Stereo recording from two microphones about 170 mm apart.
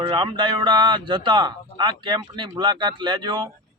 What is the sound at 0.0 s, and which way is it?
A man's voice, 25° right (ahead or behind).